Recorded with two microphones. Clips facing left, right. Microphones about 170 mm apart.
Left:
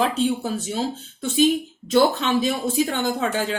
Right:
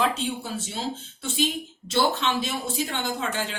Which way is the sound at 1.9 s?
45° left (ahead or behind).